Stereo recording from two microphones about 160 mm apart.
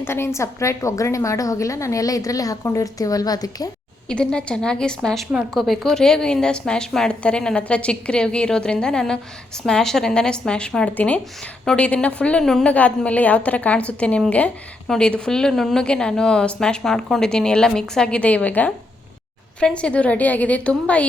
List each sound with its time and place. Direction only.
0.0 s a woman's voice: 15° left (ahead or behind)
4.1 s a woman's voice: 5° left (ahead or behind)